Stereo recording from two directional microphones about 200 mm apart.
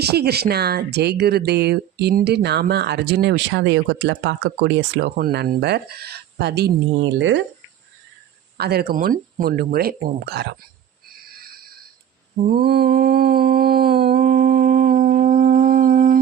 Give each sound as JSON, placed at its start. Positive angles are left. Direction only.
{"t": 0.0, "sound": "speech", "side_deg": -55}
{"t": 8.5, "sound": "speech", "side_deg": -55}
{"t": 11.3, "sound": "a sound", "side_deg": -50}
{"t": 12.5, "sound": "mantra", "side_deg": -50}